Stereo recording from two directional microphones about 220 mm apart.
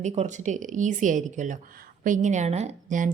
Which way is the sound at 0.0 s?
35° right (ahead or behind).